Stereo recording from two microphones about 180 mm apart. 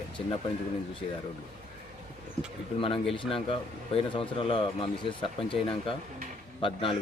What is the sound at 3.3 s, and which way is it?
Speech, 30° left (ahead or behind).